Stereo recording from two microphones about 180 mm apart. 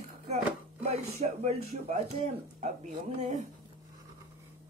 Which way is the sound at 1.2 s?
40° right (ahead or behind).